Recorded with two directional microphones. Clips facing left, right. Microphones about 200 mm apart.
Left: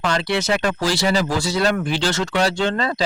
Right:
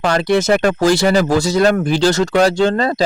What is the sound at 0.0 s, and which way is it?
Speech, 50° right (ahead or behind).